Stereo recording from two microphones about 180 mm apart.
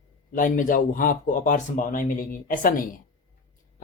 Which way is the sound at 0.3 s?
50° left (ahead or behind).